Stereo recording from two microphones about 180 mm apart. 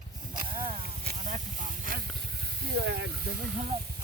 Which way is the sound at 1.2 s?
45° right (ahead or behind).